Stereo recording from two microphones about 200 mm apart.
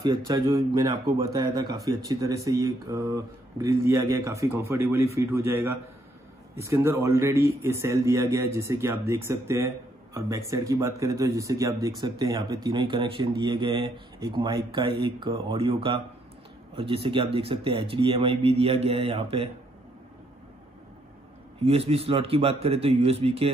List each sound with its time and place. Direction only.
0.0 s a man's voice: 20° right (ahead or behind)
21.6 s speech: 30° right (ahead or behind)